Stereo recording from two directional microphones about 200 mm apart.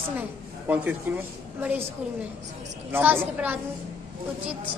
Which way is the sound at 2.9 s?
10° right (ahead or behind).